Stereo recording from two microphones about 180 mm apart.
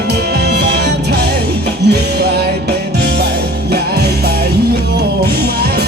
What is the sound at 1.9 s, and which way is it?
Music, 65° right (ahead or behind).